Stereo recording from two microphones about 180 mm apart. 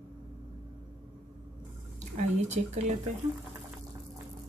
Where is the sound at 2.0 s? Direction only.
40° right (ahead or behind).